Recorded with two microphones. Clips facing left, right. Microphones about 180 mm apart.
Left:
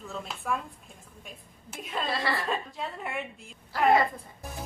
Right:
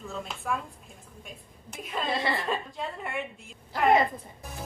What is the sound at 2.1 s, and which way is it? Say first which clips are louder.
Speech: right 2 dB; 20° right (ahead or behind).